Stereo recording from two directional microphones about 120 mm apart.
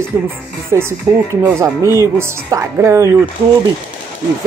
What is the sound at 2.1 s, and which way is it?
Speech, 25° right (ahead or behind).